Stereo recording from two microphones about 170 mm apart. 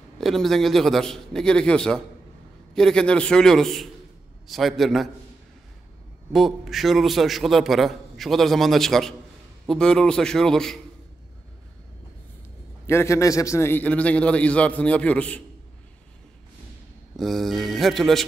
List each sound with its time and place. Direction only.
0.2 s a man's voice: centre (ahead or behind)
6.3 s a man's voice: centre (ahead or behind)
12.8 s a man's voice: 15° left (ahead or behind)
17.2 s a man's voice: centre (ahead or behind)